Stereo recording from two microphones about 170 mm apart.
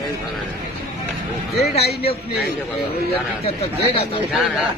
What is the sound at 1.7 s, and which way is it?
A man's voice, 35° left (ahead or behind).